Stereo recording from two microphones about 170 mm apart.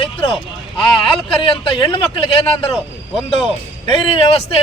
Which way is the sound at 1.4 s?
30° left (ahead or behind).